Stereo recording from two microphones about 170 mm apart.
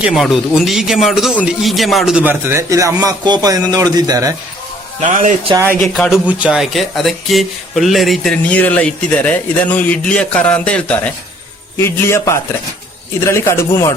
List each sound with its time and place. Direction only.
0.0 s speech: centre (ahead or behind); by 4.4 s 20° right (ahead or behind)
5.0 s speech: 45° right (ahead or behind)
5.6 s a man's voice: 5° left (ahead or behind)